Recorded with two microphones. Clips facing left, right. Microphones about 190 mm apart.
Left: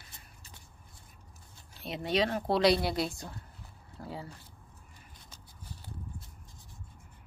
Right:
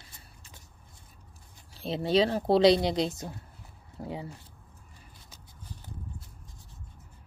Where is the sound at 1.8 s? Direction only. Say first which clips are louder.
Right 5 dB; 30° right (ahead or behind).